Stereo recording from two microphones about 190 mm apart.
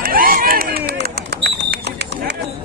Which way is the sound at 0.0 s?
50° right (ahead or behind).